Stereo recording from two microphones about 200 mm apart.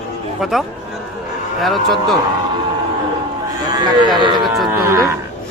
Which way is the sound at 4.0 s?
20° right (ahead or behind).